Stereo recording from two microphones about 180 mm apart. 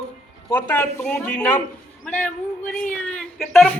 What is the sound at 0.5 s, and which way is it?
Speech, 10° left (ahead or behind).